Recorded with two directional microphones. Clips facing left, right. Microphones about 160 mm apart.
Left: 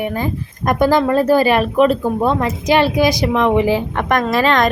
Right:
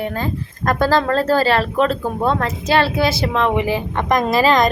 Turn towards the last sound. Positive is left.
turn(degrees=0)  # may be behind; listen again after turning